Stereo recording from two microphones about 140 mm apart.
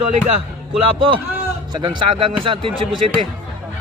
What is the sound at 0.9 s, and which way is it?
A man's voice, 40° right (ahead or behind).